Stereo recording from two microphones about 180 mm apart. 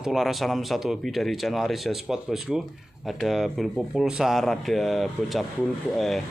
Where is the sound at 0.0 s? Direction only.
Centre (ahead or behind).